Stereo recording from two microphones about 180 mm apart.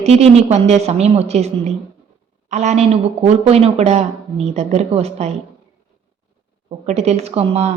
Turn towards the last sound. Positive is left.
turn(degrees=-35)  # may be behind; listen again after turning